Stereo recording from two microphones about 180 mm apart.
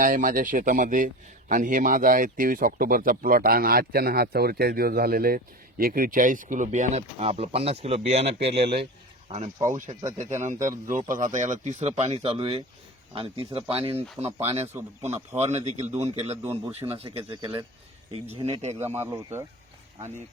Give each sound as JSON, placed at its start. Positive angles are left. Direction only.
{"t": 0.0, "sound": "speech", "side_deg": -50}
{"t": 8.5, "sound": "speech", "side_deg": -65}
{"t": 9.3, "sound": "speech", "side_deg": -40}
{"t": 17.4, "sound": "speech", "side_deg": -20}
{"t": 18.1, "sound": "speech", "side_deg": -30}
{"t": 18.9, "sound": "speech", "side_deg": -15}